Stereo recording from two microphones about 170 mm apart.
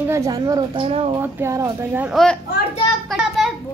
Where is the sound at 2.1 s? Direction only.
Centre (ahead or behind).